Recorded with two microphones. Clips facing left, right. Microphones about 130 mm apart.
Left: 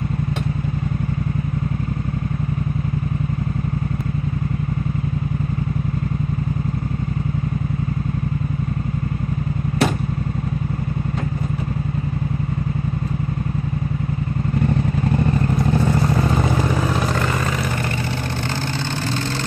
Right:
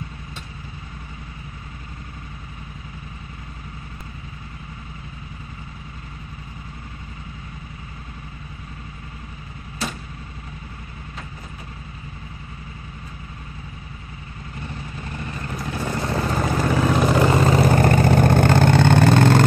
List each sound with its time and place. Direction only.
17.3 s vehicle: 30° right (ahead or behind)
17.6 s vehicle: 45° right (ahead or behind)